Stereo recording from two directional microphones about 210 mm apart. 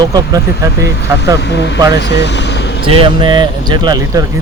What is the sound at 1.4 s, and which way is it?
Speech, 55° left (ahead or behind).